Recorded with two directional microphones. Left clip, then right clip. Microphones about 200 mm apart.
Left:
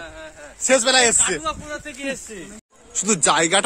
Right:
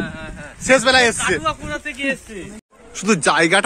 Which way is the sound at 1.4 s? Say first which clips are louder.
Right 5 dB; 25° left (ahead or behind).